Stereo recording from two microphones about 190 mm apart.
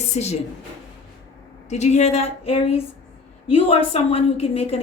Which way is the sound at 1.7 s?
35° left (ahead or behind).